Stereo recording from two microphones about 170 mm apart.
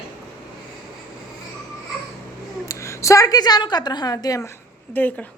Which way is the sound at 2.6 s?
15° left (ahead or behind).